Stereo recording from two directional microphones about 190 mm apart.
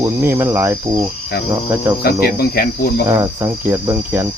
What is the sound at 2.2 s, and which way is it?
Speech, 55° left (ahead or behind).